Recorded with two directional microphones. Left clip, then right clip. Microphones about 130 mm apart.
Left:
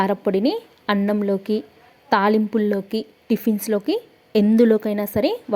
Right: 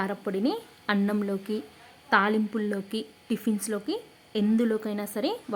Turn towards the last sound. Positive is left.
turn(degrees=35)  # may be behind; listen again after turning